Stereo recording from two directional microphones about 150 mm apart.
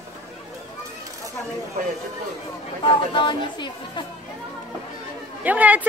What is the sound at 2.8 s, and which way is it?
Speech, 35° left (ahead or behind).